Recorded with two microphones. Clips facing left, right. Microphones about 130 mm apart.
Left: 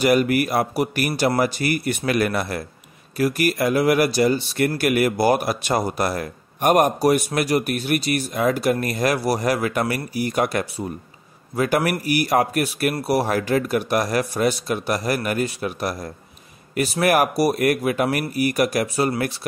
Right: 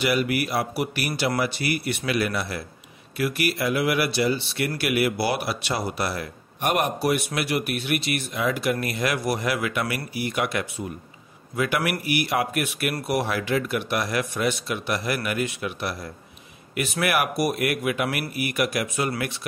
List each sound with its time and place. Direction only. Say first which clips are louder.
0.0 s a man's voice: left 6 dB; 45° left (ahead or behind)